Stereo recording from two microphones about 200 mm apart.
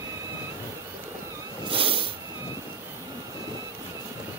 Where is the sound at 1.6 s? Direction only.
25° right (ahead or behind).